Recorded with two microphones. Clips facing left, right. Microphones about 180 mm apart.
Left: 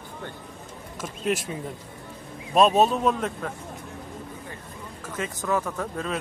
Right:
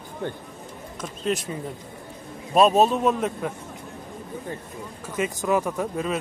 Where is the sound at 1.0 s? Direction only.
5° left (ahead or behind).